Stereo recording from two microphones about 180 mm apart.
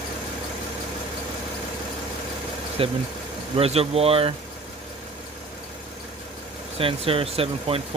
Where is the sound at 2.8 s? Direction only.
30° right (ahead or behind).